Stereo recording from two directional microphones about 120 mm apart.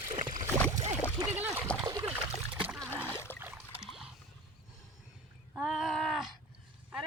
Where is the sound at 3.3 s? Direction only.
15° left (ahead or behind).